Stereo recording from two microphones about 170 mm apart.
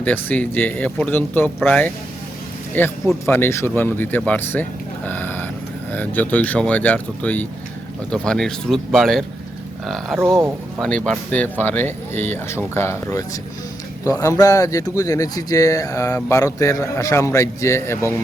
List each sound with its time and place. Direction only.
0.0 s speech: 10° left (ahead or behind)
5.0 s vehicle: 10° left (ahead or behind)
5.9 s speech: 10° left (ahead or behind)